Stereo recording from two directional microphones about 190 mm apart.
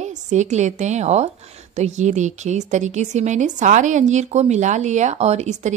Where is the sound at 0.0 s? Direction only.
40° right (ahead or behind).